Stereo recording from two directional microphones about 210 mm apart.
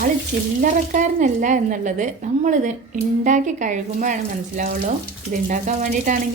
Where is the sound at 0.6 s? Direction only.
40° right (ahead or behind).